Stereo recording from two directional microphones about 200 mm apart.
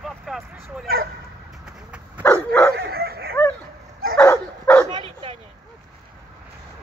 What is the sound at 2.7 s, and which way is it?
Dog, 50° right (ahead or behind).